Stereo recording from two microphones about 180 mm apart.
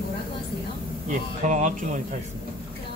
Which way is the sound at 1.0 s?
45° right (ahead or behind).